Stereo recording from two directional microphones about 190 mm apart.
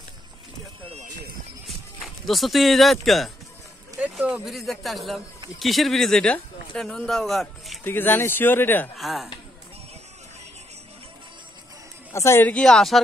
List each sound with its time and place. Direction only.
0.8 s a sound: 35° right (ahead or behind)
2.0 s a man's voice: centre (ahead or behind)
8.9 s speech: centre (ahead or behind)
12.1 s speech: 15° left (ahead or behind)